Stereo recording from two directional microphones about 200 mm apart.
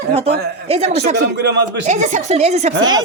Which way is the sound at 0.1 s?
30° right (ahead or behind).